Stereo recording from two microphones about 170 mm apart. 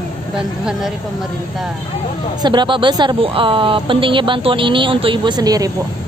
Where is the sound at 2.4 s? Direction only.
25° right (ahead or behind).